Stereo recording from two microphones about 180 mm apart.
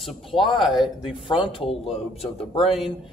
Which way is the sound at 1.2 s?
30° left (ahead or behind).